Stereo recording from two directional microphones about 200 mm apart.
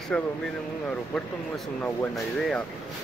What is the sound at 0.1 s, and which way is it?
Speech, 5° left (ahead or behind).